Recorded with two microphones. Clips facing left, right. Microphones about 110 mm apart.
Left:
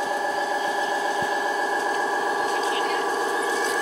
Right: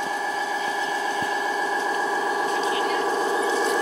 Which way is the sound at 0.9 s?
5° left (ahead or behind).